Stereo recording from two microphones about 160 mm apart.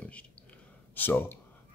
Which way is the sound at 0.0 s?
10° left (ahead or behind).